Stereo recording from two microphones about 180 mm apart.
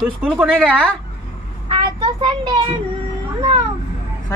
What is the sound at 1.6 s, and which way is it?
Speech, 25° right (ahead or behind).